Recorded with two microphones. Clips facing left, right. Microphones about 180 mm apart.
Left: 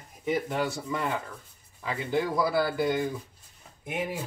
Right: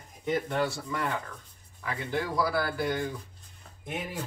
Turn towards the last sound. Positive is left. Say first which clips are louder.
# left 3 dB
turn(degrees=10)  # may be behind; listen again after turning